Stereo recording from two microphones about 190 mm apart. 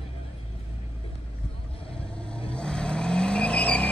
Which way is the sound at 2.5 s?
5° left (ahead or behind).